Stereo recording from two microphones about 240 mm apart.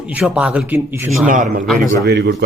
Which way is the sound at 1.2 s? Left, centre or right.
Right.